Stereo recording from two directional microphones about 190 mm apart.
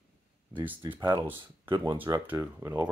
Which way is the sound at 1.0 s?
25° right (ahead or behind).